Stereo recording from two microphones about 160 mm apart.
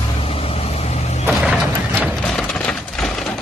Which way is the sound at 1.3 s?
5° right (ahead or behind).